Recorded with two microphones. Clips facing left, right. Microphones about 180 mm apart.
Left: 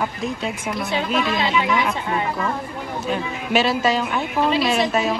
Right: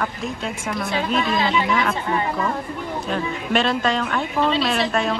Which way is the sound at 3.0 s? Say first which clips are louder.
Left 1 dB; 5° left (ahead or behind).